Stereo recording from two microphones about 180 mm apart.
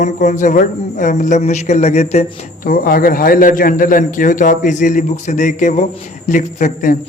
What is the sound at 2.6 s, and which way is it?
A man's voice, 50° left (ahead or behind).